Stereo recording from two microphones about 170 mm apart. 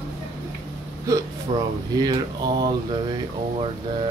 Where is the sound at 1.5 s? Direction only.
35° right (ahead or behind).